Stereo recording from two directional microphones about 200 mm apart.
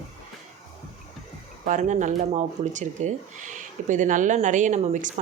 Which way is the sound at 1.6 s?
40° right (ahead or behind).